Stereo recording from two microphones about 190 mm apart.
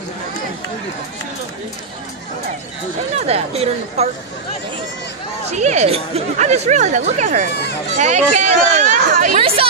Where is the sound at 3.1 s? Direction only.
35° right (ahead or behind).